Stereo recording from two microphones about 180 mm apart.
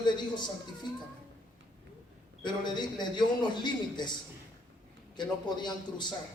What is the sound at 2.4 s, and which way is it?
Speech, 25° left (ahead or behind).